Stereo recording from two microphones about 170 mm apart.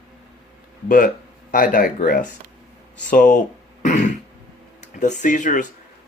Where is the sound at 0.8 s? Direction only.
55° left (ahead or behind).